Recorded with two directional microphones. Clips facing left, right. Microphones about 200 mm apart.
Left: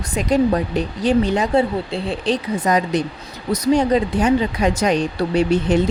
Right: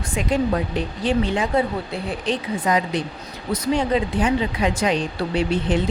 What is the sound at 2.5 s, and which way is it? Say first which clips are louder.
Speech: left 2 dB; 40° left (ahead or behind).